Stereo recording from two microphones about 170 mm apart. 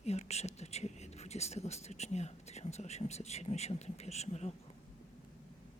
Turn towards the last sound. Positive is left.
turn(degrees=40)  # may be behind; listen again after turning